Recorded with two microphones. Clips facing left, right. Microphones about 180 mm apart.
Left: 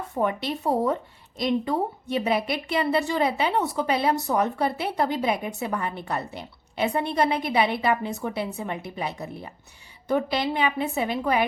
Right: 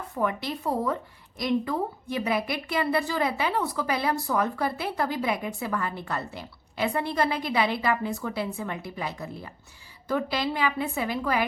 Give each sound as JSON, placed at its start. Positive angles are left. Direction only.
{"t": 0.2, "sound": "a woman's voice", "side_deg": 25}